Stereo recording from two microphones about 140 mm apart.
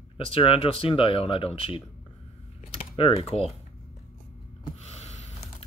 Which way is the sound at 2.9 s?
40° left (ahead or behind).